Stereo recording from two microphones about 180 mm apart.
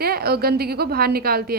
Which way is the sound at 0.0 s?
60° right (ahead or behind).